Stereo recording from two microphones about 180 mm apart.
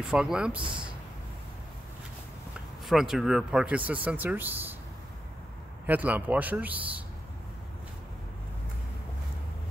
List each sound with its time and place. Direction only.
0.0 s speech: 5° right (ahead or behind)
0.6 s speech: 25° right (ahead or behind)
2.9 s speech: centre (ahead or behind)
5.9 s speech: 10° right (ahead or behind)